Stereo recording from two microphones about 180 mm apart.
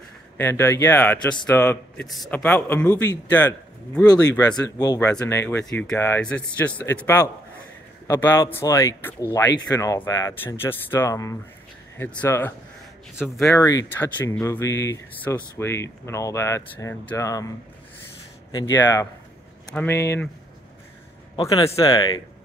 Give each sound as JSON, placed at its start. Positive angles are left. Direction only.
{"t": 0.4, "sound": "speech", "side_deg": 15}
{"t": 13.2, "sound": "speech", "side_deg": 0}
{"t": 13.6, "sound": "speech", "side_deg": 20}
{"t": 18.5, "sound": "speech", "side_deg": 20}
{"t": 19.7, "sound": "speech", "side_deg": 10}
{"t": 21.5, "sound": "speech", "side_deg": 20}